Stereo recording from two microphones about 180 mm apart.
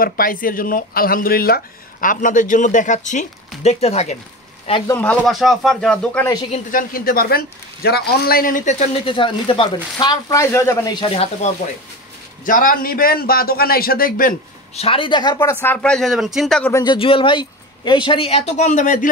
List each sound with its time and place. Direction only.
0.0 s speech: 50° left (ahead or behind); by 4.2 s 35° left (ahead or behind)
4.8 s speech: 10° left (ahead or behind)
6.5 s speech: 50° left (ahead or behind); by 11.2 s 25° left (ahead or behind)
12.4 s a man's voice: 50° left (ahead or behind)
14.8 s speech: 30° left (ahead or behind)
15.6 s speech: 10° left (ahead or behind)
16.7 s speech: 25° left (ahead or behind); by 19.0 s 45° left (ahead or behind)